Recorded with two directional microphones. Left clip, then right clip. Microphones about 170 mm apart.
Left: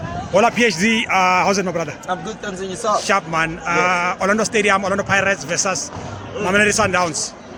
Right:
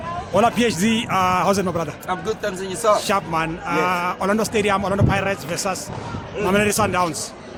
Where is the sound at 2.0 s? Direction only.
30° right (ahead or behind).